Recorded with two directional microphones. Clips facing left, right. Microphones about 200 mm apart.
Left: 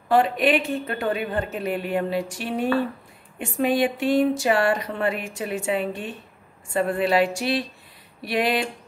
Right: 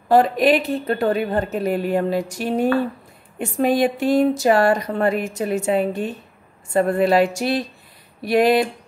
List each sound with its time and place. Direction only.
0.1 s speech: 40° right (ahead or behind)